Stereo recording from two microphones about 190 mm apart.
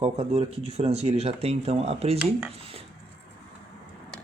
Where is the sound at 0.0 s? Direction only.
30° right (ahead or behind).